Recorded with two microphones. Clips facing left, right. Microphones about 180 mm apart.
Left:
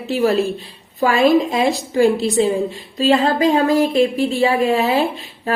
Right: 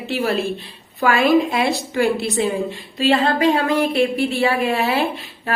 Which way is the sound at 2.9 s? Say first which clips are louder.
Left 2 dB; 35° left (ahead or behind).